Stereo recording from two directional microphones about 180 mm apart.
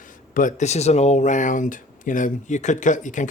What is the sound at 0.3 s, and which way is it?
Speech, 45° left (ahead or behind).